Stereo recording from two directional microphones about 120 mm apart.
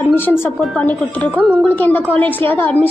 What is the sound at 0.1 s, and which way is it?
A woman's voice, 20° left (ahead or behind).